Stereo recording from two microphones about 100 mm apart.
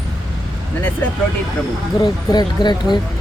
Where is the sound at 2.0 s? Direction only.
45° left (ahead or behind).